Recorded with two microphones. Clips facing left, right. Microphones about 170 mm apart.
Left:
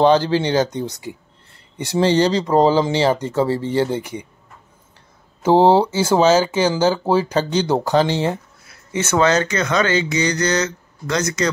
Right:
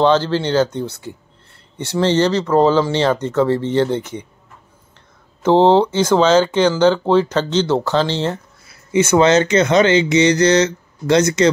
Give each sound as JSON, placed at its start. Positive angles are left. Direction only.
{"t": 0.0, "sound": "speech", "side_deg": 15}
{"t": 5.4, "sound": "speech", "side_deg": 10}
{"t": 8.9, "sound": "speech", "side_deg": -15}